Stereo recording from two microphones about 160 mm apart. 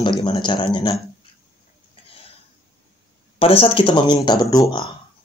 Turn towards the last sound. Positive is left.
turn(degrees=20)  # may be behind; listen again after turning